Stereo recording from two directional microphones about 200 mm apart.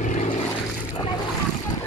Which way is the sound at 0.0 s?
40° left (ahead or behind).